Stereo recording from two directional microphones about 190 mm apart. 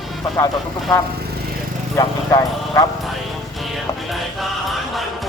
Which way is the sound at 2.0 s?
15° left (ahead or behind).